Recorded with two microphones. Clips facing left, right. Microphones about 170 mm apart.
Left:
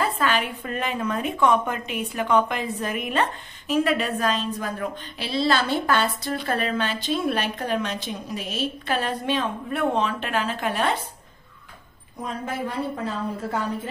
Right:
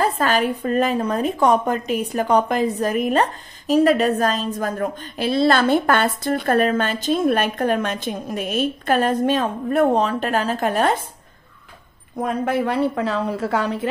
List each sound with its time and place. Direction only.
0.0 s a woman's voice: 40° right (ahead or behind)
12.2 s a woman's voice: 65° right (ahead or behind); by 13.8 s 90° right